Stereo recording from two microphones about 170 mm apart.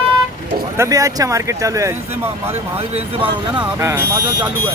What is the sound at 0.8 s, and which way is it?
Speech, 20° right (ahead or behind).